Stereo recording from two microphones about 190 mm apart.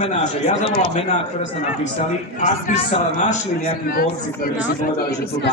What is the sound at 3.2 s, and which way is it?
A man's voice, 50° left (ahead or behind).